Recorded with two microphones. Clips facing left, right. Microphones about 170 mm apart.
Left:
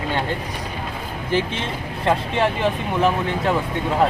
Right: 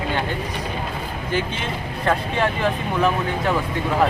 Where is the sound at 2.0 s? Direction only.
25° left (ahead or behind).